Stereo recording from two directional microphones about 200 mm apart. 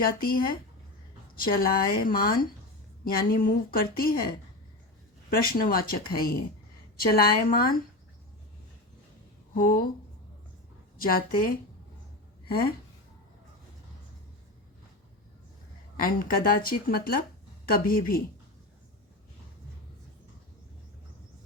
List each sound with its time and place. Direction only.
0.0 s a woman's voice: 45° left (ahead or behind)
1.5 s a woman's voice: 45° left (ahead or behind)
9.6 s a woman's voice: 45° left (ahead or behind)
11.0 s a woman's voice: 45° left (ahead or behind)
16.0 s a woman's voice: 45° left (ahead or behind)